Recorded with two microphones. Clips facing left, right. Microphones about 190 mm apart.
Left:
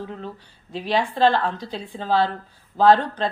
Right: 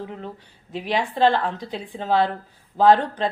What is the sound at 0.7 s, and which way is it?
Speech, 20° right (ahead or behind).